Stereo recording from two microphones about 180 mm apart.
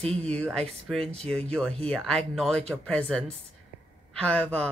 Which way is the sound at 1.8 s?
5° left (ahead or behind).